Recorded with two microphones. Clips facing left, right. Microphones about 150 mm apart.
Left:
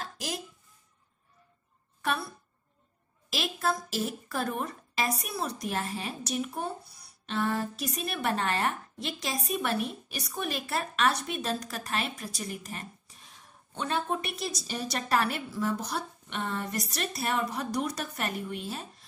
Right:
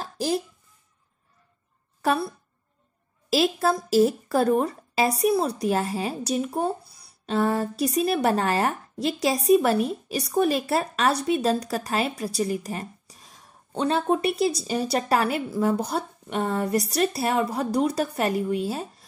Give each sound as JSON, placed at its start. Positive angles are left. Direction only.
{"t": 0.0, "sound": "a sound", "side_deg": -30}
{"t": 2.0, "sound": "a woman's voice", "side_deg": -35}
{"t": 15.8, "sound": "speech", "side_deg": -55}
{"t": 16.5, "sound": "speech", "side_deg": -35}